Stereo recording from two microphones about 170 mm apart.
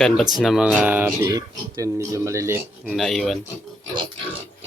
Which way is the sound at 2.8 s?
Centre (ahead or behind).